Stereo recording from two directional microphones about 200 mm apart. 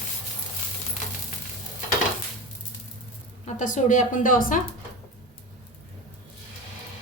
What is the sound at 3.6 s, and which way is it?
A woman's voice, 40° left (ahead or behind).